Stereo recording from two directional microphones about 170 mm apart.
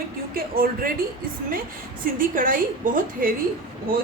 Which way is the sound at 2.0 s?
55° right (ahead or behind).